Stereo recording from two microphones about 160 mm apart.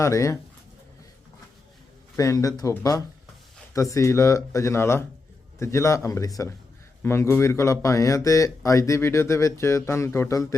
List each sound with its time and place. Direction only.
0.0 s speech: 20° left (ahead or behind)
2.1 s speech: 20° left (ahead or behind)